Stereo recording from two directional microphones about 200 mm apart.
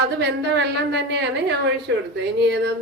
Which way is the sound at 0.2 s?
60° right (ahead or behind).